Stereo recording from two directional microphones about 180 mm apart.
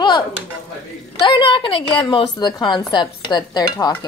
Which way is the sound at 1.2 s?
25° left (ahead or behind).